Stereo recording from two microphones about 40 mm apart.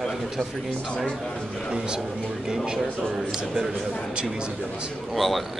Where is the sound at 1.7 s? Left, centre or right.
Right.